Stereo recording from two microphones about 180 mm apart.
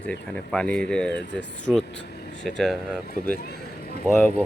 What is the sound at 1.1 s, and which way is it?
Speech, 75° left (ahead or behind).